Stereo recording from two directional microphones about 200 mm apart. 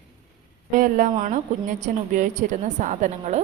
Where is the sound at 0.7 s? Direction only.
40° right (ahead or behind).